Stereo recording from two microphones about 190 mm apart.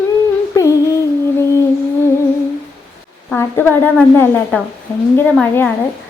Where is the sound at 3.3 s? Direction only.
10° left (ahead or behind).